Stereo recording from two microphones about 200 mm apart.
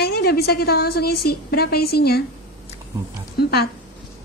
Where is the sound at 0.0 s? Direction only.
50° left (ahead or behind).